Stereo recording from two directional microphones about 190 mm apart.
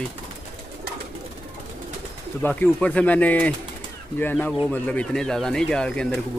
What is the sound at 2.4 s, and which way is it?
Speech, 10° left (ahead or behind).